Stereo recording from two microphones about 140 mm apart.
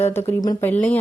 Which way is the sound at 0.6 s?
15° left (ahead or behind).